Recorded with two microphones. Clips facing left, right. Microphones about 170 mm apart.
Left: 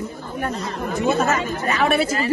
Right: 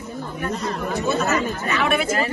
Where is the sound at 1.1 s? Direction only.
50° left (ahead or behind).